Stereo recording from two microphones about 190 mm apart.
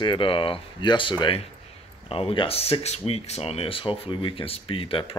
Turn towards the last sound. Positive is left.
turn(degrees=30)  # may be behind; listen again after turning